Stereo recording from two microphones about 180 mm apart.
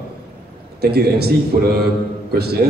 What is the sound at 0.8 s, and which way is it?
A man's voice, 60° right (ahead or behind).